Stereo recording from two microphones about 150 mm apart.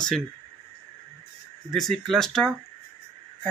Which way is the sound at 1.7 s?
Centre (ahead or behind).